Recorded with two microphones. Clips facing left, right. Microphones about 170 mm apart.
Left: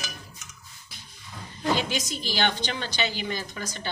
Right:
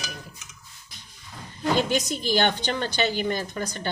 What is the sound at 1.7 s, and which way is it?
A woman's voice, 50° right (ahead or behind).